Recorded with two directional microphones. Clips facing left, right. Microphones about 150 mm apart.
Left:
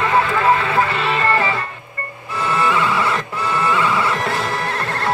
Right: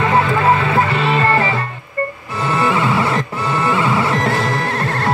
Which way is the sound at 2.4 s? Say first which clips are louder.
Right 2 dB; 30° right (ahead or behind).